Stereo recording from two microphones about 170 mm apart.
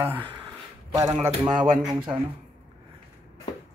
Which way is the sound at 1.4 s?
25° right (ahead or behind).